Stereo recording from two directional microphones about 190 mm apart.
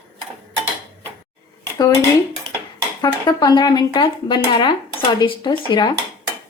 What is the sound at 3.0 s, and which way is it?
Speech, 20° left (ahead or behind).